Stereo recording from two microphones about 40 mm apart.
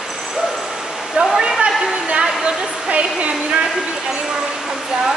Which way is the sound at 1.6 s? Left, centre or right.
Right.